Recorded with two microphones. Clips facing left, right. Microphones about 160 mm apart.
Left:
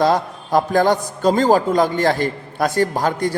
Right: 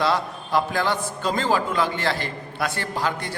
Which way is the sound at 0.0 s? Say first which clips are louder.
Left 6 dB; 45° left (ahead or behind).